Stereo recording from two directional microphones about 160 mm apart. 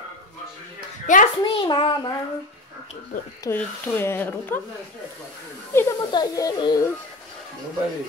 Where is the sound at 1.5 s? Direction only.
30° left (ahead or behind).